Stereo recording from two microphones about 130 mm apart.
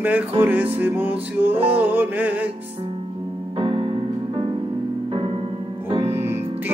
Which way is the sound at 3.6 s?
45° right (ahead or behind).